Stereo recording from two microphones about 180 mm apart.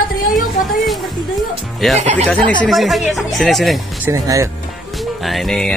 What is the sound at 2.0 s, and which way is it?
Music, 40° right (ahead or behind).